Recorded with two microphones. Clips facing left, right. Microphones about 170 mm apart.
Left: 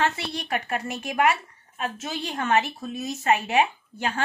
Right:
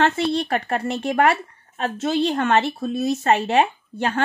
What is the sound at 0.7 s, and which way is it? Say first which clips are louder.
Speech: right 6 dB; 30° right (ahead or behind).